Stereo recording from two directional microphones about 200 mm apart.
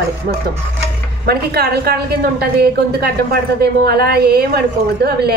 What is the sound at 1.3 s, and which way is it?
A woman's voice, 50° right (ahead or behind).